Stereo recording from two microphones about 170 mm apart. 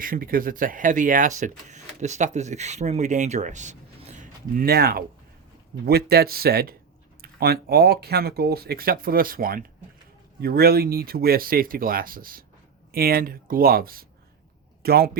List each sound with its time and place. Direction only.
0.0 s speech: 55° right (ahead or behind)
4.2 s a man's voice: 60° right (ahead or behind)